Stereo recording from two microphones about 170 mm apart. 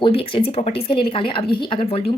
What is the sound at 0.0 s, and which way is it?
Speech, 30° left (ahead or behind).